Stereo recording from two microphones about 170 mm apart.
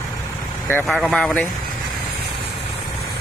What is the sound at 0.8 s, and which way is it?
Speech, centre (ahead or behind).